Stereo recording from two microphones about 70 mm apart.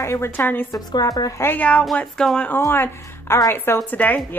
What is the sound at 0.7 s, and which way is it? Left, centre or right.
Speech, left.